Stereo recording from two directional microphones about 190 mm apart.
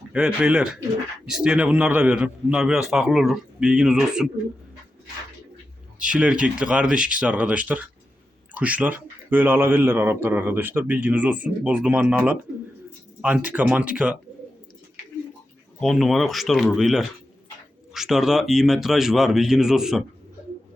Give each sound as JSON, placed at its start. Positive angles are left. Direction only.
{"t": 0.1, "sound": "a man's voice", "side_deg": -5}
{"t": 6.0, "sound": "speech", "side_deg": -5}
{"t": 15.8, "sound": "a man's voice", "side_deg": 0}